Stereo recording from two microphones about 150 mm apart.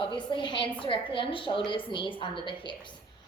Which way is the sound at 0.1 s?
30° left (ahead or behind).